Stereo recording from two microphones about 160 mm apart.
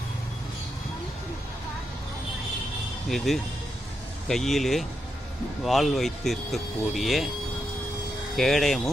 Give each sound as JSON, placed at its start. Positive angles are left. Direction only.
{"t": 3.1, "sound": "speech", "side_deg": 0}
{"t": 8.4, "sound": "speech", "side_deg": 0}